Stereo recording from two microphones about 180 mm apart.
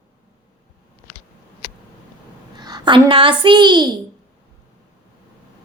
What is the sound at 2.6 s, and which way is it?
A child's voice, 25° right (ahead or behind).